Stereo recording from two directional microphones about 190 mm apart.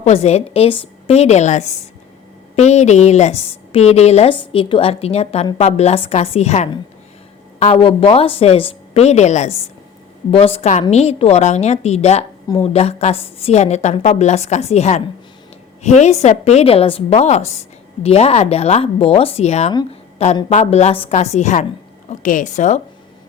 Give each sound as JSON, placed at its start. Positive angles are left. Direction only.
{"t": 0.0, "sound": "a woman's voice", "side_deg": 35}